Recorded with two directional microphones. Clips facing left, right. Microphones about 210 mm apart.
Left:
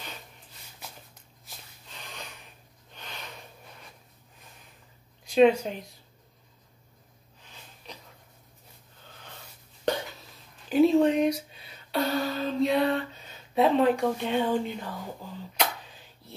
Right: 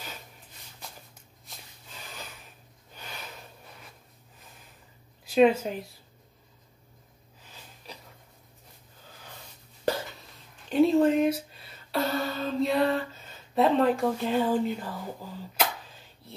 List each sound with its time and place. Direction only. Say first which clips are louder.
1.4 s snort: even; 5° right (ahead or behind)
5.2 s speech: left 1 dB; 5° right (ahead or behind)
9.9 s hiccup: even; 5° right (ahead or behind)
10.7 s speech: left 1 dB; centre (ahead or behind)
15.5 s a sound: even; centre (ahead or behind)